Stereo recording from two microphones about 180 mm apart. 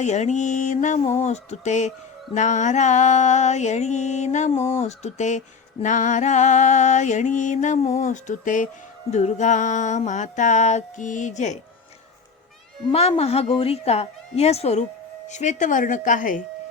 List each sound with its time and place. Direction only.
0.0 s music: 40° left (ahead or behind)
4.5 s a sound: 15° left (ahead or behind)
4.8 s music: 40° left (ahead or behind)
12.9 s music: 35° left (ahead or behind)
15.3 s speech: 40° left (ahead or behind)